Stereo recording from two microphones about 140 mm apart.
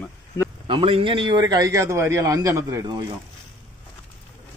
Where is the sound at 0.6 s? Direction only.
40° right (ahead or behind); by 2.9 s 20° right (ahead or behind).